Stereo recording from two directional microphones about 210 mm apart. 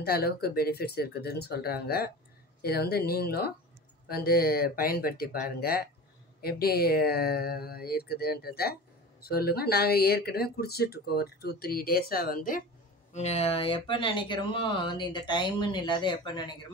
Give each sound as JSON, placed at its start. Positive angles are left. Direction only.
{"t": 0.0, "sound": "speech", "side_deg": 50}
{"t": 13.1, "sound": "speech", "side_deg": 30}